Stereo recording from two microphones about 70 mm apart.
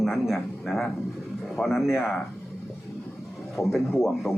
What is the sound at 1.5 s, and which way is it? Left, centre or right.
Speech, centre.